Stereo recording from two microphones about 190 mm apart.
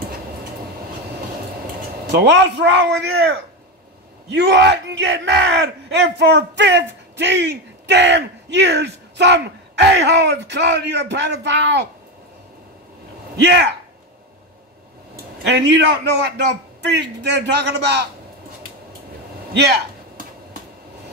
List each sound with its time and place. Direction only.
2.1 s a man's voice: 65° right (ahead or behind)
13.4 s speech: 65° right (ahead or behind)
15.5 s speech: 60° right (ahead or behind)